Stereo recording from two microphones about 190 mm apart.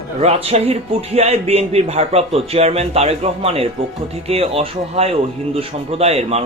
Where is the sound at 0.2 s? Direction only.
35° right (ahead or behind).